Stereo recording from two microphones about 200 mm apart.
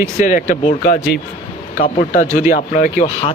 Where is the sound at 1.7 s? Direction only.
25° left (ahead or behind).